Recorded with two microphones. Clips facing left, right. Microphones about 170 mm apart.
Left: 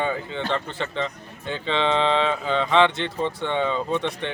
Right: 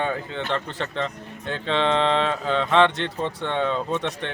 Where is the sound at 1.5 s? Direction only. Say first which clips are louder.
Right 1 dB; centre (ahead or behind).